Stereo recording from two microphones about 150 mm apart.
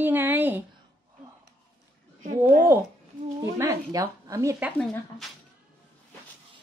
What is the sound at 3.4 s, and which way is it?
Speech, 20° right (ahead or behind).